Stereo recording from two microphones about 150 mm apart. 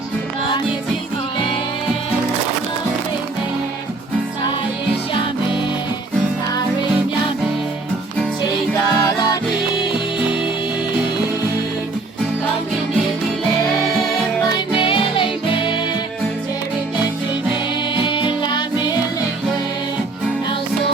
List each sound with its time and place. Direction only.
8.9 s music: 25° left (ahead or behind)
14.8 s music: 35° left (ahead or behind)
18.1 s music: 35° left (ahead or behind)